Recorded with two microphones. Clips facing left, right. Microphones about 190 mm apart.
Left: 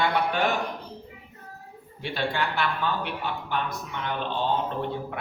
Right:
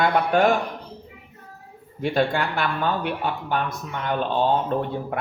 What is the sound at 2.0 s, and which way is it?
Speech, 45° right (ahead or behind).